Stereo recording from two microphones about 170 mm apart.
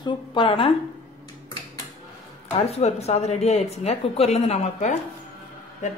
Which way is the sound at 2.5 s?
35° left (ahead or behind).